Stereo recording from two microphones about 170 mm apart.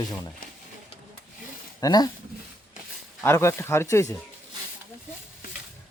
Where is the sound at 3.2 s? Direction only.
15° left (ahead or behind).